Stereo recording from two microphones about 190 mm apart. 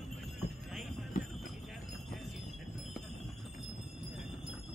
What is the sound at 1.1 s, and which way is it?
Jingle bell, 45° left (ahead or behind).